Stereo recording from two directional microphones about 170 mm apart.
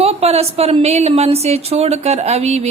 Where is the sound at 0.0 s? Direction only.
35° right (ahead or behind).